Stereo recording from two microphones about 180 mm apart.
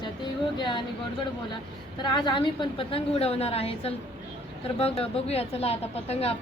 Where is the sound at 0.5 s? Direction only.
25° left (ahead or behind).